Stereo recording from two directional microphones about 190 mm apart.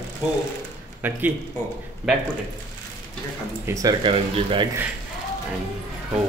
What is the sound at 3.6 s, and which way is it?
Speech, 15° right (ahead or behind).